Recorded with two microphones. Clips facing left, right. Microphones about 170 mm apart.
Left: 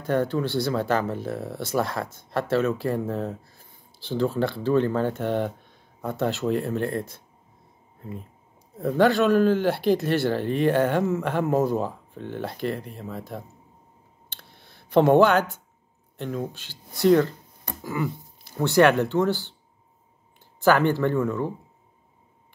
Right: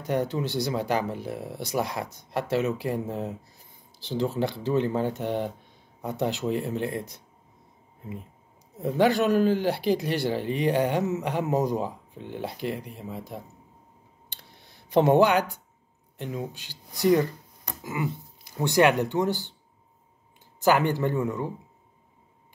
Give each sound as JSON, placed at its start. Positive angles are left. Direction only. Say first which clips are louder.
{"t": 0.0, "sound": "speech", "louder": "left 3 dB", "side_deg": -15}
{"t": 8.7, "sound": "speech", "louder": "left 2 dB", "side_deg": -15}
{"t": 9.4, "sound": "speech", "louder": "left 2 dB", "side_deg": 60}
{"t": 9.9, "sound": "speech", "louder": "left 3 dB", "side_deg": -15}
{"t": 14.3, "sound": "a sound", "louder": "left 2 dB", "side_deg": -15}
{"t": 16.2, "sound": "speech", "louder": "left 3 dB", "side_deg": -15}
{"t": 20.6, "sound": "speech", "louder": "left 2 dB", "side_deg": -15}